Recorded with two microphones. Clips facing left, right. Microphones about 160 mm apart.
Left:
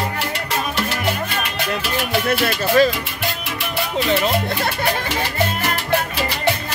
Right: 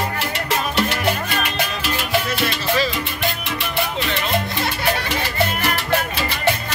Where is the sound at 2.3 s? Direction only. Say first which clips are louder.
Left 4 dB; 50° left (ahead or behind).